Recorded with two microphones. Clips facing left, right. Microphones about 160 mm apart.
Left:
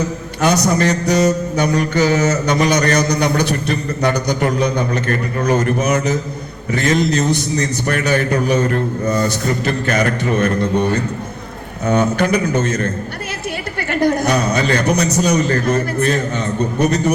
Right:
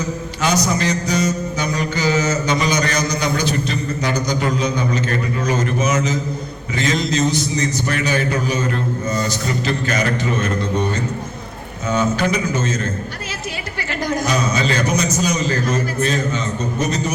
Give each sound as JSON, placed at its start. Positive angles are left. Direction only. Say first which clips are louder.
{"t": 0.4, "sound": "mantra", "louder": "left 4 dB", "side_deg": 60}
{"t": 6.7, "sound": "mantra", "louder": "left 3 dB", "side_deg": 55}
{"t": 7.9, "sound": "a man's voice", "louder": "left 6 dB", "side_deg": 55}
{"t": 8.4, "sound": "mantra", "louder": "left 5 dB", "side_deg": 55}
{"t": 11.9, "sound": "mantra", "louder": "left 3 dB", "side_deg": 60}
{"t": 14.0, "sound": "mantra", "louder": "left 4 dB", "side_deg": 60}